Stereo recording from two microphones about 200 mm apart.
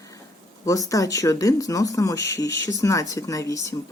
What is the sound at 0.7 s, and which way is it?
Speech, 15° left (ahead or behind).